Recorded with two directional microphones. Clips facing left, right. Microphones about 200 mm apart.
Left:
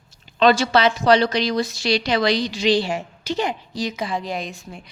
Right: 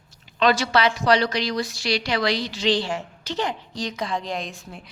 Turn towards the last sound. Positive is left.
turn(degrees=0)  # may be behind; listen again after turning